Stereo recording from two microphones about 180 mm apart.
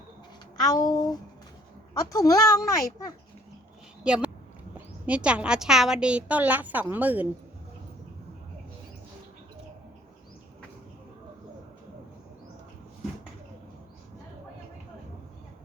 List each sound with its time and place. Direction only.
0.5 s speech: 20° left (ahead or behind)
4.0 s a woman's voice: 5° right (ahead or behind)